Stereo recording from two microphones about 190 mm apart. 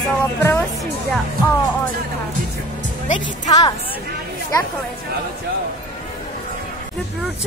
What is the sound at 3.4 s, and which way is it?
Speech, 20° left (ahead or behind).